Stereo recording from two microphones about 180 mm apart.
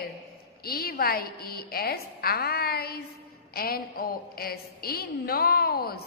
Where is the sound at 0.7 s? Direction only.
55° left (ahead or behind).